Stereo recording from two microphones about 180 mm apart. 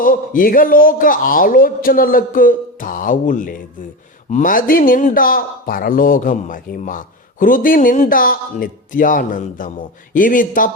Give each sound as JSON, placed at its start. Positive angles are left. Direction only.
{"t": 0.0, "sound": "a man's voice", "side_deg": 50}